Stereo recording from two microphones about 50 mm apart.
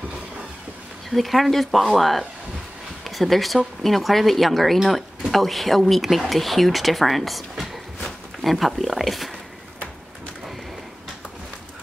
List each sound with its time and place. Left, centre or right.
1.1 s speech: centre